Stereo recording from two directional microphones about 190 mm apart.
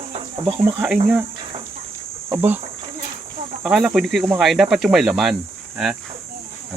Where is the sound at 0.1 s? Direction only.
25° right (ahead or behind).